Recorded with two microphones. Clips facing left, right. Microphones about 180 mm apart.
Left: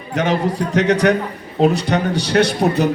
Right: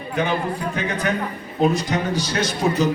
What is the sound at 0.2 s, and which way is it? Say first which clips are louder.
Speech: left 5 dB; 90° left.